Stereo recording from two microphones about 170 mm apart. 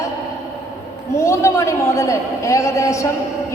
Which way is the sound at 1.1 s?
15° left (ahead or behind).